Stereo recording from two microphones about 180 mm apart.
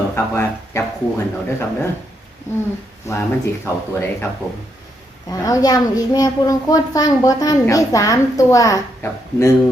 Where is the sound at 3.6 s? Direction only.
10° left (ahead or behind).